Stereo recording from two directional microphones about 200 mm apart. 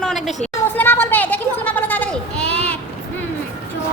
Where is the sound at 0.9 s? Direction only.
10° left (ahead or behind).